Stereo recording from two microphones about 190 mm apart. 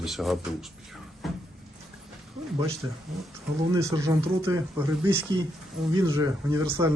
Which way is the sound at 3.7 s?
15° right (ahead or behind).